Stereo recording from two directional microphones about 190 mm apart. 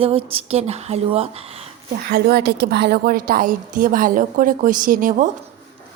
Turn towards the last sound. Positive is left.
turn(degrees=-45)  # may be behind; listen again after turning